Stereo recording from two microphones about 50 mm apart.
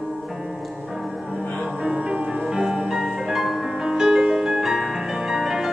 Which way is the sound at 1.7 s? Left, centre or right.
Centre.